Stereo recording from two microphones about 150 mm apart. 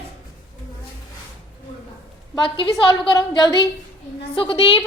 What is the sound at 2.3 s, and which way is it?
A woman's voice, 30° left (ahead or behind).